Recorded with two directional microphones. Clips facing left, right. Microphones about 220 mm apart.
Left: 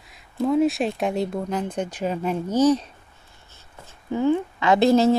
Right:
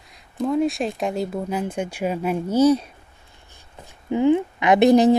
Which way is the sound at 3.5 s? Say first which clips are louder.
Right 2 dB; 15° right (ahead or behind).